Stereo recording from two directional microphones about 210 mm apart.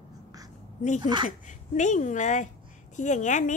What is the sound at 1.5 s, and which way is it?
A woman's voice, 35° left (ahead or behind).